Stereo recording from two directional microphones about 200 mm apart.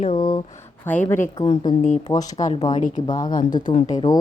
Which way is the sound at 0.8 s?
10° left (ahead or behind).